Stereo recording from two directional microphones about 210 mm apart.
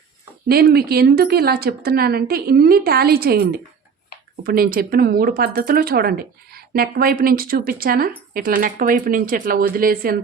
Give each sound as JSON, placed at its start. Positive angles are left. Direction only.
{"t": 0.4, "sound": "speech", "side_deg": -45}